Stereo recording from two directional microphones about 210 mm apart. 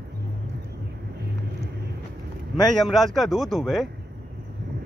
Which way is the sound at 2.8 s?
Centre (ahead or behind).